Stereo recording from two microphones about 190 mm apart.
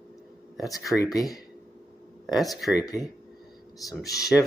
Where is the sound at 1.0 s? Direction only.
20° left (ahead or behind).